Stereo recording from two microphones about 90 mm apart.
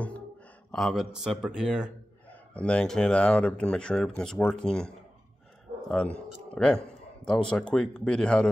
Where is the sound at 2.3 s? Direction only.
15° left (ahead or behind).